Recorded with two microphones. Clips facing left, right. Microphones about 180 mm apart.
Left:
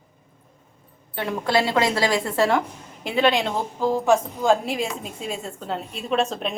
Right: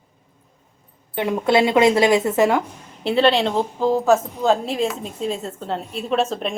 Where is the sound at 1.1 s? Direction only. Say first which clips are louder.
Right 5 dB; 20° right (ahead or behind).